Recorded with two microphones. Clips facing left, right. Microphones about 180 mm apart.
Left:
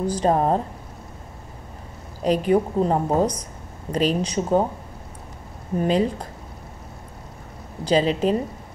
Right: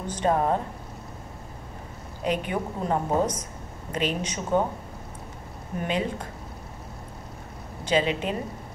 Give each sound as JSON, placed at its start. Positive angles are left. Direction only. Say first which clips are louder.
{"t": 0.0, "sound": "a woman's voice", "louder": "left 4 dB", "side_deg": 35}
{"t": 2.2, "sound": "a woman's voice", "louder": "left 8 dB", "side_deg": 35}
{"t": 5.8, "sound": "a woman's voice", "louder": "left 7 dB", "side_deg": 35}
{"t": 7.8, "sound": "a woman's voice", "louder": "left 5 dB", "side_deg": 35}